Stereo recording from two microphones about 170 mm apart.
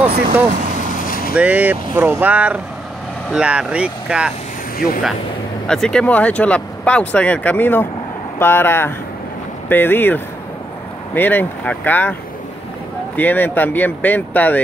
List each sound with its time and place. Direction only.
1.0 s vehicle: 55° left (ahead or behind)
1.3 s speech: 5° right (ahead or behind)
4.7 s speech: 60° left (ahead or behind)
5.7 s speech: 5° left (ahead or behind)